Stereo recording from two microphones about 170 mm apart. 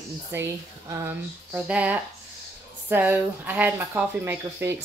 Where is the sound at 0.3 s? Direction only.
15° right (ahead or behind).